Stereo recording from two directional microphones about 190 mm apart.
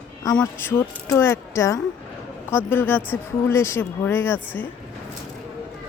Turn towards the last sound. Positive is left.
turn(degrees=10)  # may be behind; listen again after turning